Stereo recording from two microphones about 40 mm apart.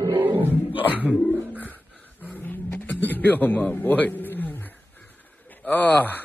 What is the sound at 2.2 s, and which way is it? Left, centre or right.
Roaring cats, left.